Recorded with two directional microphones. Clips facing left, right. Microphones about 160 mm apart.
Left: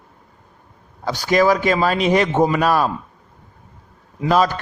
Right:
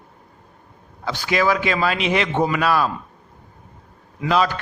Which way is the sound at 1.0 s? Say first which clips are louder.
Left 4 dB; 40° left (ahead or behind).